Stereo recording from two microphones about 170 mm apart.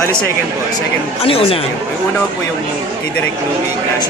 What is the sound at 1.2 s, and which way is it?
Speech, 35° left (ahead or behind).